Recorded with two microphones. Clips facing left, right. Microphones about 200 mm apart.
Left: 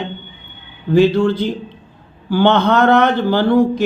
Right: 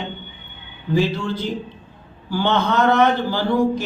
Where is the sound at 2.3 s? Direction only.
60° left (ahead or behind).